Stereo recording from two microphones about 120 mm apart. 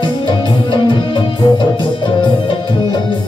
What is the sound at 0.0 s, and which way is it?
Music, 40° left (ahead or behind).